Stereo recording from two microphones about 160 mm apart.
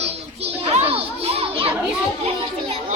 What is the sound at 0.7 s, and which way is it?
Children playing, 40° right (ahead or behind).